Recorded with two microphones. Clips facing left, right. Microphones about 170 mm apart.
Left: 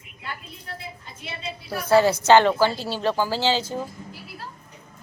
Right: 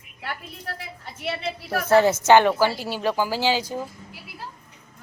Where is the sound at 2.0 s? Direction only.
20° right (ahead or behind).